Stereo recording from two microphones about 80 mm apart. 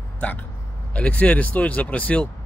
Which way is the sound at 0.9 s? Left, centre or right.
Centre.